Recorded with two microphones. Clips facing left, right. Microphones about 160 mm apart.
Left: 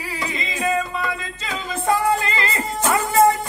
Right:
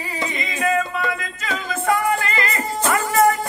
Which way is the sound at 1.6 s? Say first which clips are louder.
Left 1 dB; 25° left (ahead or behind).